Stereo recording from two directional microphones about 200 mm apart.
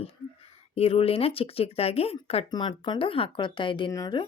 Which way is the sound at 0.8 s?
30° left (ahead or behind).